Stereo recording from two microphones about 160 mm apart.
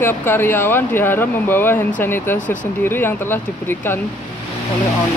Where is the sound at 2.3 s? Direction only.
55° left (ahead or behind).